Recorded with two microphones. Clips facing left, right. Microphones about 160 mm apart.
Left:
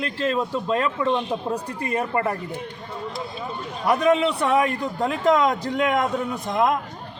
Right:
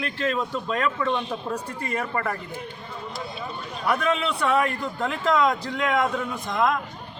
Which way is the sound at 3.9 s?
35° left (ahead or behind).